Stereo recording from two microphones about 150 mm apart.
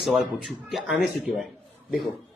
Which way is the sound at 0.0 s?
Centre (ahead or behind).